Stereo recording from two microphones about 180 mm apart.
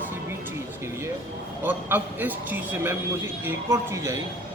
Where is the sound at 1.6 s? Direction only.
10° right (ahead or behind).